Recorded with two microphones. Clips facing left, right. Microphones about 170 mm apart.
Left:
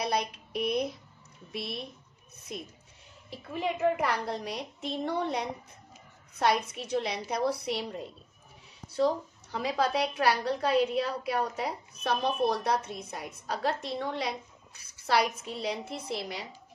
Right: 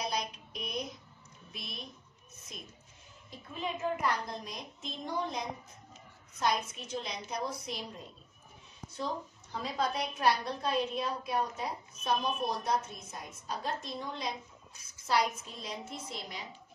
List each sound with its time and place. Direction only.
0.0 s a sound: 65° left (ahead or behind)
1.5 s a woman's voice: 65° left (ahead or behind)
3.3 s a woman's voice: 70° left (ahead or behind)